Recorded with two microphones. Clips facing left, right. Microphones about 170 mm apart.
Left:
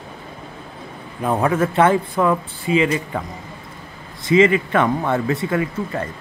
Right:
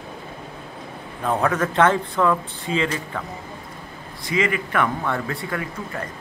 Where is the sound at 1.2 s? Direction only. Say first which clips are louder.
Left 3 dB; 10° left (ahead or behind).